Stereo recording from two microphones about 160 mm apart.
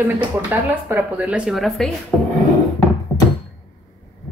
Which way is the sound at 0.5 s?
10° right (ahead or behind).